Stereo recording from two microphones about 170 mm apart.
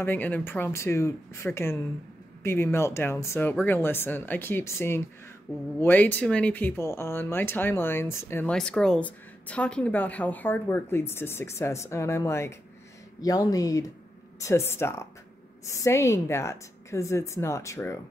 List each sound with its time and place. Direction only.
0.0 s speech: 10° left (ahead or behind)